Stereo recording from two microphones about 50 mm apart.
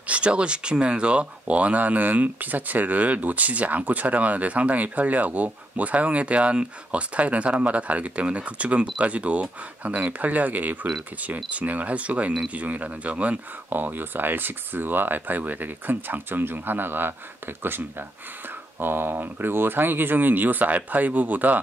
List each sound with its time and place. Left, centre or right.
0.0 s speech: right
13.7 s speech: right
18.8 s speech: right